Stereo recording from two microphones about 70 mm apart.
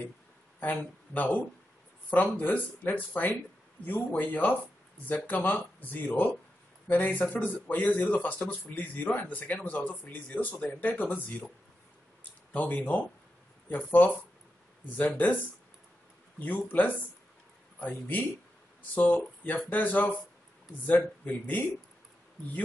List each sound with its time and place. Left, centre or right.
0.6 s speech: left
12.5 s speech: left
16.3 s speech: left